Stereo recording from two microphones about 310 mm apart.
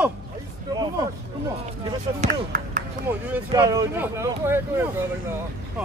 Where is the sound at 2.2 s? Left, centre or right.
Right.